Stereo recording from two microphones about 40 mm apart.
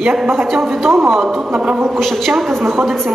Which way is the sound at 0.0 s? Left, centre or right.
Right.